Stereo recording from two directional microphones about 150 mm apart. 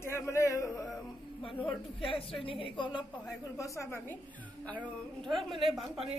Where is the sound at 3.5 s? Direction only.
20° left (ahead or behind).